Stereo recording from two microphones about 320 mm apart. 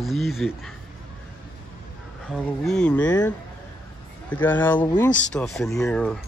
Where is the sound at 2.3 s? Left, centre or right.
Centre.